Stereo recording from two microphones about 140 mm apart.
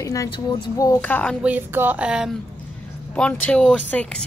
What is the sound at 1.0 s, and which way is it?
Speech, 10° left (ahead or behind).